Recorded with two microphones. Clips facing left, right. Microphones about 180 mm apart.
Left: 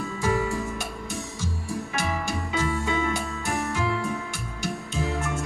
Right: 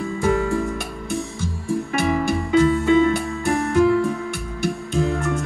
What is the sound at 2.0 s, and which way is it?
Music, 55° right (ahead or behind).